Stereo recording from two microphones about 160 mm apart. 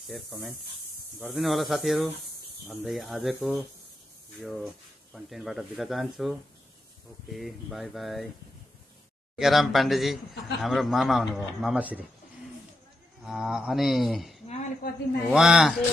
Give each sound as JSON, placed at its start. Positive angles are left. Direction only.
{"t": 0.1, "sound": "speech", "side_deg": 0}
{"t": 9.4, "sound": "speech", "side_deg": 0}
{"t": 13.2, "sound": "speech", "side_deg": 0}
{"t": 14.8, "sound": "a man's voice", "side_deg": 70}
{"t": 15.3, "sound": "speech", "side_deg": -5}